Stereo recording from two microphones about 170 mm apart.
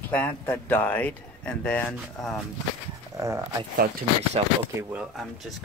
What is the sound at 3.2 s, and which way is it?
Speech, 15° right (ahead or behind).